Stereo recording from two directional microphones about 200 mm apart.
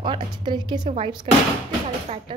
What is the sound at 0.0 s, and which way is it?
A woman's voice, 25° right (ahead or behind).